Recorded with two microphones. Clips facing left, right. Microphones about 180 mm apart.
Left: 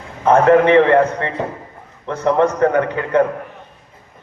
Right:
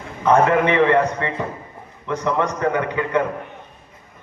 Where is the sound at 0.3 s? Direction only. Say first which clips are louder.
Left 5 dB; 50° left (ahead or behind).